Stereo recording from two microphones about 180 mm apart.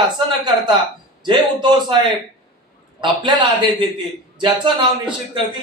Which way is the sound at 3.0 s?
25° right (ahead or behind).